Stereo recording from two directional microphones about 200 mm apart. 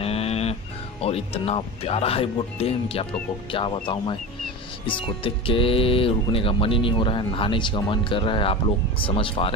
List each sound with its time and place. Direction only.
0.0 s music: 30° left (ahead or behind)
1.0 s speech: 30° left (ahead or behind)